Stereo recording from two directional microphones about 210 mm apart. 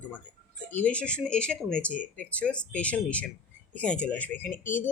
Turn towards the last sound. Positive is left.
turn(degrees=10)  # may be behind; listen again after turning